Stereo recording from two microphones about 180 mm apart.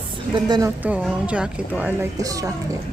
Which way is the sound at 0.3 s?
25° right (ahead or behind).